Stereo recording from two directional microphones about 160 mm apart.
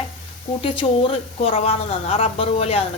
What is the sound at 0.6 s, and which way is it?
A woman's voice, 35° left (ahead or behind).